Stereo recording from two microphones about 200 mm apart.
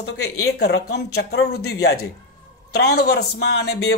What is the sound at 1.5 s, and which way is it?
Speech, 90° left.